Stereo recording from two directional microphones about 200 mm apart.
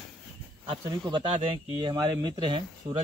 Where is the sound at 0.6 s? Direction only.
20° right (ahead or behind).